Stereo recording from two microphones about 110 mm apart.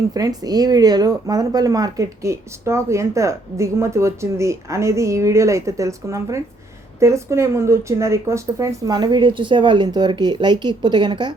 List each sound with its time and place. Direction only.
0.1 s speech: 35° right (ahead or behind)